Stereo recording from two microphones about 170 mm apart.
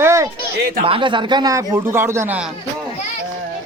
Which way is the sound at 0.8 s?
30° right (ahead or behind).